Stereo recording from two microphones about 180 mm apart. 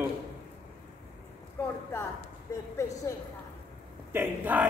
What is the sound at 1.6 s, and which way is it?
Speech, 15° left (ahead or behind).